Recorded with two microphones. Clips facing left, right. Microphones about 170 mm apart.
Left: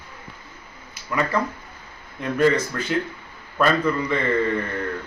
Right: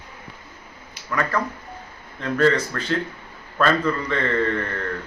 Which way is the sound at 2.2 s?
15° left (ahead or behind).